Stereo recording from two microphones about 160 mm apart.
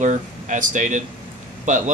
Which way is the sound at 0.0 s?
50° right (ahead or behind).